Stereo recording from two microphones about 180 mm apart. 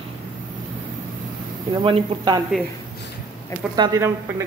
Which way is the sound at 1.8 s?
30° right (ahead or behind).